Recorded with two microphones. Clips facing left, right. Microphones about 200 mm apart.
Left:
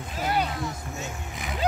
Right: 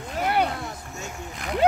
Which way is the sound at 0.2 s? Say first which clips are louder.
Right 3 dB; 60° right (ahead or behind).